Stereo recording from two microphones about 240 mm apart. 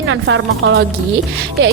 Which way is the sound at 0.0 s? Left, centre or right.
Right.